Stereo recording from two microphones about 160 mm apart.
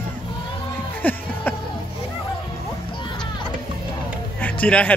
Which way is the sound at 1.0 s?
10° left (ahead or behind).